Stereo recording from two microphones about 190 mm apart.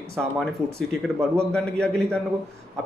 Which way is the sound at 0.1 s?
Centre (ahead or behind).